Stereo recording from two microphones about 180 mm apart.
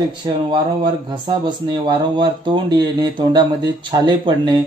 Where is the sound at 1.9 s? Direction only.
25° right (ahead or behind).